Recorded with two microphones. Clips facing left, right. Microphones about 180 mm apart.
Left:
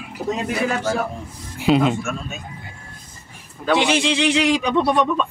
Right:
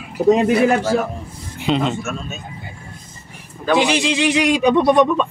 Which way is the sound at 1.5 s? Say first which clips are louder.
Left 2 dB; 5° left (ahead or behind).